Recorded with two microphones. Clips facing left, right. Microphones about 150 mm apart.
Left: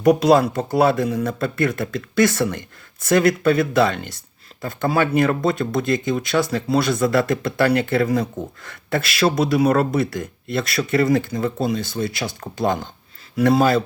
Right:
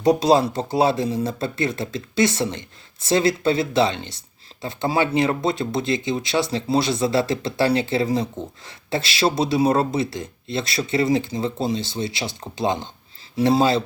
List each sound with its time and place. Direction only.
0.0 s speech: 25° right (ahead or behind)